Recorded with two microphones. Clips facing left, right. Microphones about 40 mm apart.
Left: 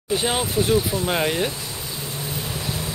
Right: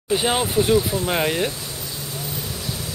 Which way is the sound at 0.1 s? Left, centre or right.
Centre.